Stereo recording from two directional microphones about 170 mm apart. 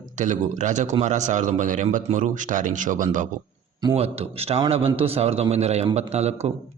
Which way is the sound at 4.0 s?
35° right (ahead or behind).